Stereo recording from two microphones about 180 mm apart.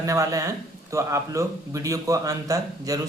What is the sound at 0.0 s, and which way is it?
Speech, 20° right (ahead or behind).